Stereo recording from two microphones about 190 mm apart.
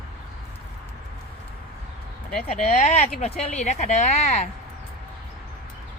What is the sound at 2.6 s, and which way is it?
Speech, 35° left (ahead or behind).